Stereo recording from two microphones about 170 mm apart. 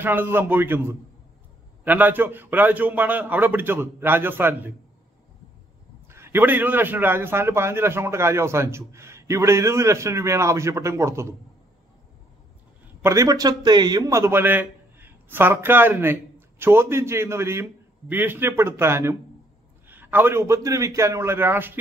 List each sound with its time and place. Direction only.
0.0 s a man's voice: 10° right (ahead or behind)
6.0 s a man's voice: 15° right (ahead or behind)
13.0 s a man's voice: 20° right (ahead or behind)